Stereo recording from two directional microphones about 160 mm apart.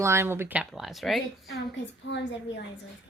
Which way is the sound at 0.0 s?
15° right (ahead or behind).